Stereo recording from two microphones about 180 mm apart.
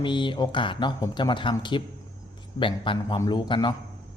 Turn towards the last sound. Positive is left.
turn(degrees=25)  # may be behind; listen again after turning